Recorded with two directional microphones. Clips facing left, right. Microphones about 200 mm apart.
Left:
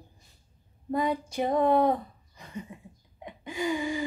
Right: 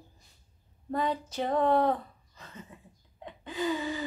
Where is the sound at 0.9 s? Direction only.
10° left (ahead or behind).